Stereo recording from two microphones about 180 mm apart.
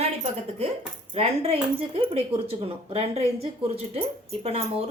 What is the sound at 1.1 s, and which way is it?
Speech, 35° right (ahead or behind).